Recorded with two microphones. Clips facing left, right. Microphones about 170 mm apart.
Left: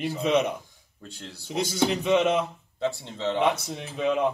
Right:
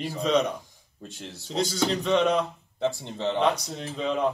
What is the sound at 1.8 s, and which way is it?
Speech, 5° left (ahead or behind).